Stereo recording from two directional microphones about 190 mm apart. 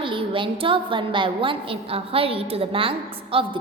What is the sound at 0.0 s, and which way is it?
A woman's voice, 25° right (ahead or behind).